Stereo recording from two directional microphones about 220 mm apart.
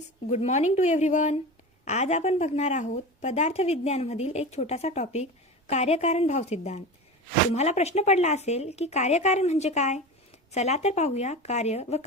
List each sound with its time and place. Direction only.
0.3 s a woman's voice: 30° left (ahead or behind)